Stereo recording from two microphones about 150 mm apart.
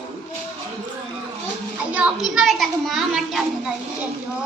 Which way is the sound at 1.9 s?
10° right (ahead or behind).